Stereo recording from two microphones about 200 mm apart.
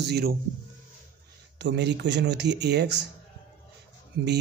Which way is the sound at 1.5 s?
60° right (ahead or behind).